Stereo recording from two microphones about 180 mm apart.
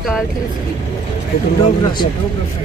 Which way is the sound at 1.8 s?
25° left (ahead or behind).